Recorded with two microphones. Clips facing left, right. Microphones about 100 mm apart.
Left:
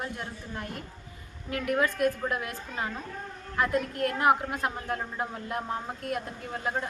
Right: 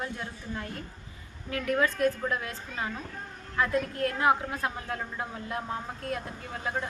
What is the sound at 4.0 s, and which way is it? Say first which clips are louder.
A woman's voice: left 2 dB; 20° left (ahead or behind).